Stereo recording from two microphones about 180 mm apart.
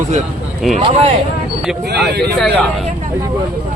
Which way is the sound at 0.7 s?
35° right (ahead or behind).